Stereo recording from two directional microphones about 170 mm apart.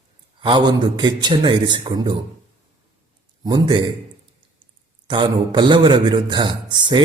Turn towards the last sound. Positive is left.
turn(degrees=-25)  # may be behind; listen again after turning